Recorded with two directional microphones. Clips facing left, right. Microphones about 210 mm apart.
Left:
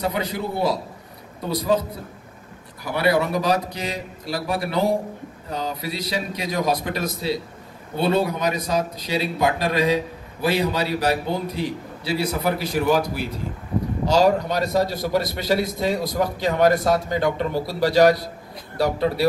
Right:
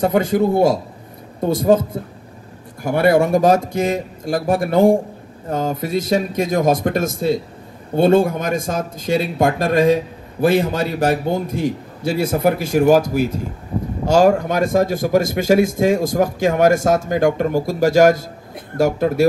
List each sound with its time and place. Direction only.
0.0 s a man's voice: 50° right (ahead or behind)